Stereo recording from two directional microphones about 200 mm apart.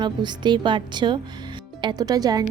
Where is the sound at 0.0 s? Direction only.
20° right (ahead or behind).